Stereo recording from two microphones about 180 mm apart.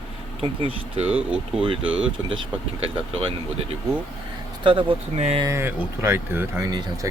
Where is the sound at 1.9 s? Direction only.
30° right (ahead or behind).